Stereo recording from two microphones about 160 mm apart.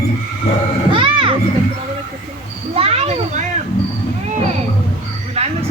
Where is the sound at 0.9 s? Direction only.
30° right (ahead or behind).